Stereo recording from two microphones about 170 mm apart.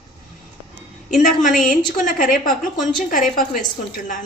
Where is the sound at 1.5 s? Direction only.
50° left (ahead or behind).